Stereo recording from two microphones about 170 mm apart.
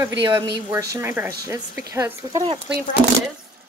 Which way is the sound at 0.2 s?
25° right (ahead or behind).